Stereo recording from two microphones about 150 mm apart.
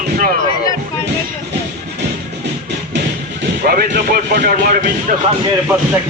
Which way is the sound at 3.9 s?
80° right.